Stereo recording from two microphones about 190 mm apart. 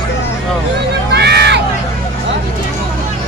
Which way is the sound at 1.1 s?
60° right (ahead or behind).